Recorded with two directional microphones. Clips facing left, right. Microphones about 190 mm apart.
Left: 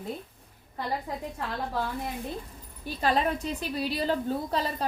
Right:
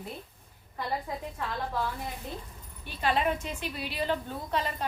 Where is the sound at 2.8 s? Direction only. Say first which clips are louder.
Left 2 dB; 40° left (ahead or behind).